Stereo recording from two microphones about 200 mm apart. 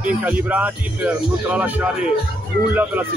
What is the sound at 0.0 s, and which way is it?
Speech, 5° right (ahead or behind).